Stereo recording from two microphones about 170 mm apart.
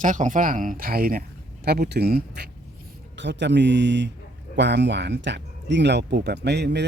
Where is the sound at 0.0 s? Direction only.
50° right (ahead or behind); by 2.5 s 70° right (ahead or behind).